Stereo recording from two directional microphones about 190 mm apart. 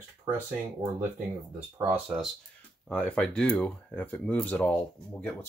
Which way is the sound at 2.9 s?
5° left (ahead or behind).